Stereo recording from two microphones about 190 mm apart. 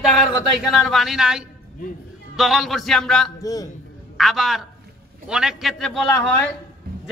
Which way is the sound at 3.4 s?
20° left (ahead or behind).